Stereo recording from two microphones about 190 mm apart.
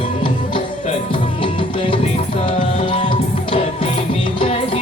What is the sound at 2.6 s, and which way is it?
Music, 30° left (ahead or behind).